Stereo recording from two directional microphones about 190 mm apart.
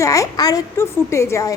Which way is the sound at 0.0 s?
15° left (ahead or behind).